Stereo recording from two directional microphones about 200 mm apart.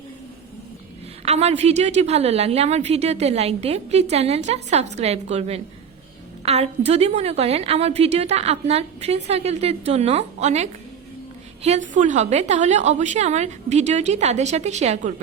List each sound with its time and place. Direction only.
1.2 s a woman's voice: 30° right (ahead or behind)